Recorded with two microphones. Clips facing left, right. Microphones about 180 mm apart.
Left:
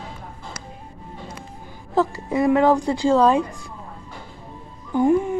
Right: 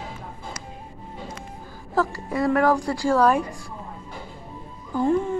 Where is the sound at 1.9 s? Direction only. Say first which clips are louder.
Left 3 dB; 20° left (ahead or behind).